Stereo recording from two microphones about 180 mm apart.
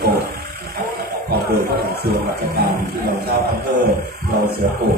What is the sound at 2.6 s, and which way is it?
Speech, 60° right (ahead or behind).